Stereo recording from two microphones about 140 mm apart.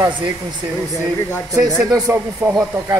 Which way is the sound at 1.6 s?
25° right (ahead or behind).